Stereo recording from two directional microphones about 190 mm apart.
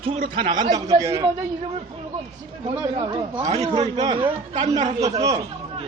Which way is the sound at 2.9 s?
25° right (ahead or behind).